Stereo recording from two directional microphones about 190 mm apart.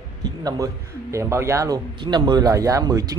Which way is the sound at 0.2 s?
20° right (ahead or behind).